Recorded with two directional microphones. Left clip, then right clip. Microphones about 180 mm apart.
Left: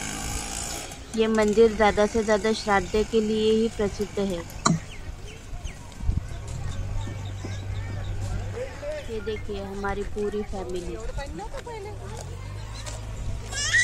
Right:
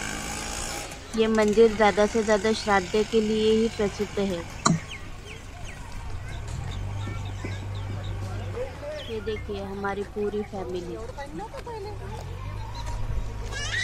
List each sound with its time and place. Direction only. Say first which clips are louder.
0.0 s a sound: right 1 dB; 65° left (ahead or behind)
1.1 s speech: even; centre (ahead or behind)
9.2 s speech: even; centre (ahead or behind)